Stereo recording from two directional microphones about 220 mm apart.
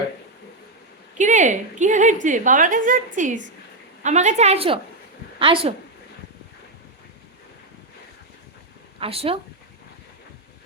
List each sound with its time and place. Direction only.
1.2 s a woman's voice: 35° right (ahead or behind)
9.0 s speech: 25° right (ahead or behind)